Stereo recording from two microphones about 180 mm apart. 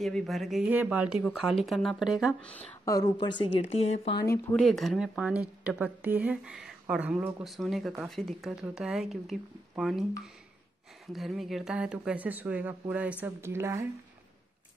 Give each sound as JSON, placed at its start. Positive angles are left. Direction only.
{"t": 0.0, "sound": "speech", "side_deg": 0}
{"t": 2.8, "sound": "speech", "side_deg": 20}
{"t": 4.6, "sound": "speech", "side_deg": 0}